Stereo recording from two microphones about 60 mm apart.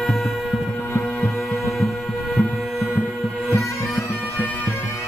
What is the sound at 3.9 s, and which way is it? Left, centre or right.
Bagpipes, left.